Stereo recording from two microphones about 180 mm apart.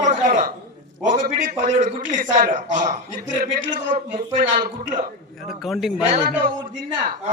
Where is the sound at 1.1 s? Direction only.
45° right (ahead or behind).